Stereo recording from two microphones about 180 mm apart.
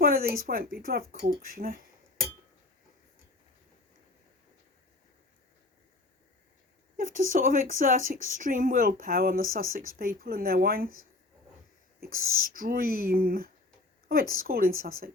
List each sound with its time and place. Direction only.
0.0 s speech: 55° right (ahead or behind)
6.9 s a woman's voice: 50° right (ahead or behind)
11.9 s a woman's voice: 55° right (ahead or behind)